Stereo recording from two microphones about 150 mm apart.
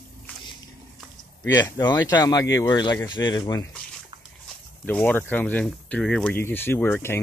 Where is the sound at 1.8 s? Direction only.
25° left (ahead or behind).